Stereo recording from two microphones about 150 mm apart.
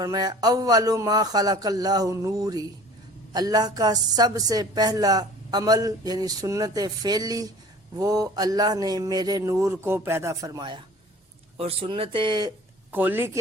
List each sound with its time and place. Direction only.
0.0 s a woman's voice: 25° right (ahead or behind)
12.9 s speech: 15° right (ahead or behind)